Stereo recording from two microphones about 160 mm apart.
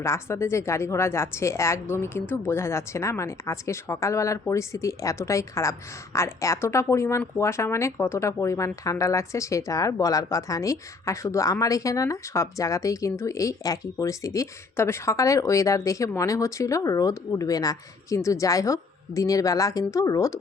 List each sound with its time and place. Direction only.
0.0 s a woman's voice: 15° left (ahead or behind)